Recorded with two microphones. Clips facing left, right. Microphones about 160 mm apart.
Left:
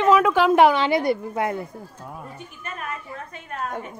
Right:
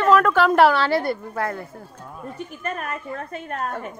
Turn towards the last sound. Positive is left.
turn(degrees=-50)  # may be behind; listen again after turning